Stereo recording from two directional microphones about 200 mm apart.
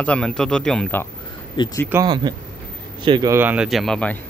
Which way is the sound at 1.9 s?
20° right (ahead or behind).